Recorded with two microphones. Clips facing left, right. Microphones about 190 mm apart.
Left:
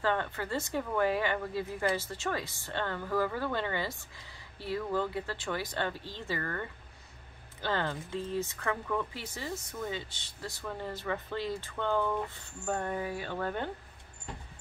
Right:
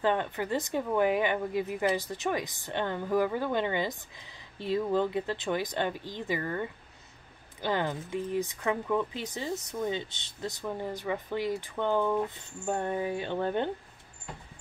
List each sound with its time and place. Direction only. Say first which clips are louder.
0.0 s speech: right 3 dB; 20° right (ahead or behind)